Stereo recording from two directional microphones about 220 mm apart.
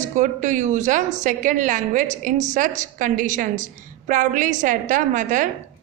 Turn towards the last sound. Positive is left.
turn(degrees=-35)  # may be behind; listen again after turning